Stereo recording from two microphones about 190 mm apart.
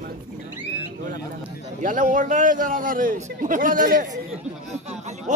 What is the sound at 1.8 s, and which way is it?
A man's voice, 45° right (ahead or behind).